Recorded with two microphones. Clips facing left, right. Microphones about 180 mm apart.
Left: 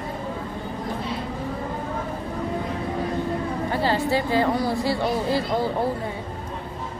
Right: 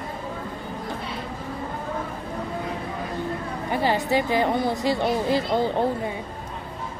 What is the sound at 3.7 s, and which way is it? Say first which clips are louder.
A woman's voice: right 1 dB; 15° right (ahead or behind).